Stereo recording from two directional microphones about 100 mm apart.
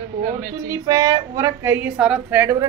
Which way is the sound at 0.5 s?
40° right (ahead or behind).